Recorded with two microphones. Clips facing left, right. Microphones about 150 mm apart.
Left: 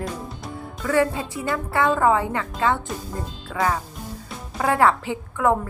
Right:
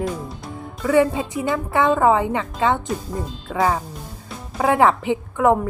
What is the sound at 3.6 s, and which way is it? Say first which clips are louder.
A woman's voice: right 3 dB; 20° right (ahead or behind).